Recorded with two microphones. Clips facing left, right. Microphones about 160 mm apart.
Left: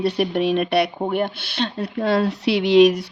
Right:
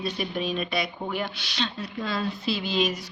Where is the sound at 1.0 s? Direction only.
55° left (ahead or behind).